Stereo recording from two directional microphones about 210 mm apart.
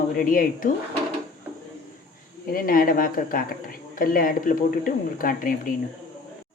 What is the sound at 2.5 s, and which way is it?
Speech, 45° left (ahead or behind).